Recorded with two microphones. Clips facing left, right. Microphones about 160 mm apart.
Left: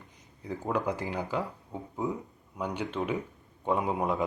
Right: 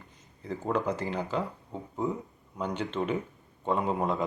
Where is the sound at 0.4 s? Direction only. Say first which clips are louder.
Right 1 dB; 10° left (ahead or behind).